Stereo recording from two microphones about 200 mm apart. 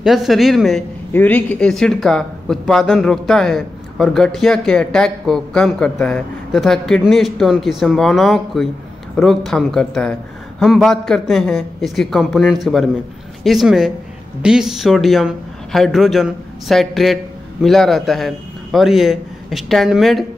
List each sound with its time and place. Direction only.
0.0 s speech: centre (ahead or behind)